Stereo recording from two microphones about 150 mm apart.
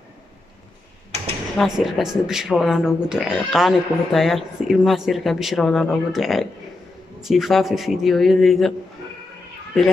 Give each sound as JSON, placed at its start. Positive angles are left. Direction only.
{"t": 1.6, "sound": "speech", "side_deg": 0}